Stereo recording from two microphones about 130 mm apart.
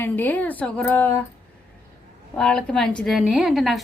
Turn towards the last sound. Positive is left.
turn(degrees=0)  # may be behind; listen again after turning